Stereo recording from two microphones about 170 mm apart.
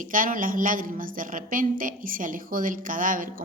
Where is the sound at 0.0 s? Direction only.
50° right (ahead or behind).